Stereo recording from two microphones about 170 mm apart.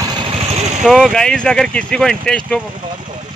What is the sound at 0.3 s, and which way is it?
Vehicle, 40° right (ahead or behind).